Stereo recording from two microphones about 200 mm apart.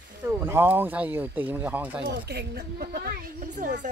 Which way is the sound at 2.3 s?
50° right (ahead or behind).